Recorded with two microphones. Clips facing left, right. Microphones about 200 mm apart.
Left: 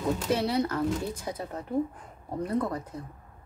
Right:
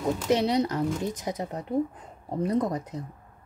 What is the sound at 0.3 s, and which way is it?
Speech, 20° right (ahead or behind).